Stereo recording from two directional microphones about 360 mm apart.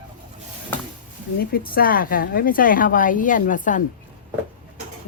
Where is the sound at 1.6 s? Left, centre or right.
Left.